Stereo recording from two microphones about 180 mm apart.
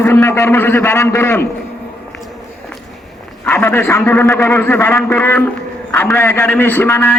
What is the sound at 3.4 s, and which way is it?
A man's voice, 10° left (ahead or behind).